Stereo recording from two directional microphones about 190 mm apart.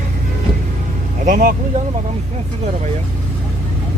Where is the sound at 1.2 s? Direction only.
45° right (ahead or behind).